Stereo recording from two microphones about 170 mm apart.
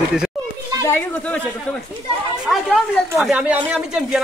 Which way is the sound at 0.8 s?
10° left (ahead or behind).